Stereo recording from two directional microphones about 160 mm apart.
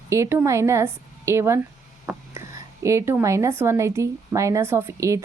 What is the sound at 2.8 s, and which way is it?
A woman's voice, 15° right (ahead or behind).